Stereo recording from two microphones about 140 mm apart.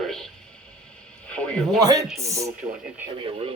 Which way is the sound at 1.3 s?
10° left (ahead or behind).